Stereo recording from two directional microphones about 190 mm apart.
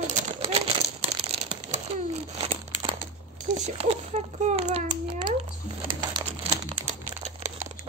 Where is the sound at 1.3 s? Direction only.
35° right (ahead or behind).